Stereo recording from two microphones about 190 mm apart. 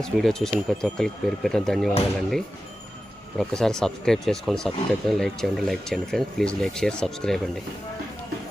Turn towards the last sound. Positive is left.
turn(degrees=5)  # may be behind; listen again after turning